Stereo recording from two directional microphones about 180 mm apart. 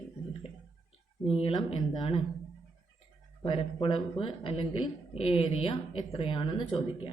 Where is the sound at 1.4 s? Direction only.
30° left (ahead or behind).